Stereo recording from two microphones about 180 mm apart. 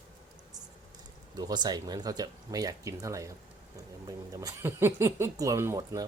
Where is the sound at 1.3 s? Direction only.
20° right (ahead or behind).